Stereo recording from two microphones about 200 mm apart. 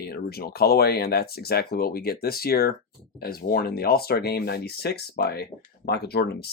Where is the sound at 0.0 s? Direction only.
50° left (ahead or behind).